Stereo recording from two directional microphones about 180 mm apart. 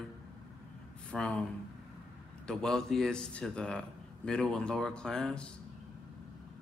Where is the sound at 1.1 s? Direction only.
5° left (ahead or behind).